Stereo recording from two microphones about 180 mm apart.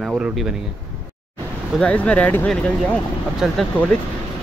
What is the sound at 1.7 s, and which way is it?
Speech, 5° left (ahead or behind).